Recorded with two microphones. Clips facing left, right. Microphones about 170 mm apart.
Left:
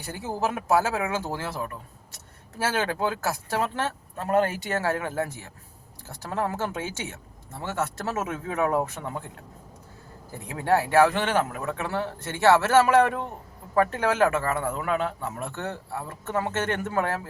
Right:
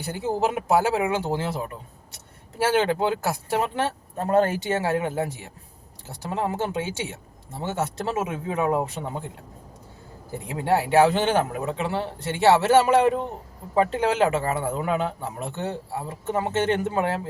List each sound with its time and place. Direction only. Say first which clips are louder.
0.3 s a man's voice: right 1 dB; 25° right (ahead or behind)
2.8 s a man's voice: right 4 dB; 20° right (ahead or behind)
4.2 s a man's voice: right 3 dB; 30° right (ahead or behind)
10.5 s a man's voice: right 1 dB; 15° right (ahead or behind)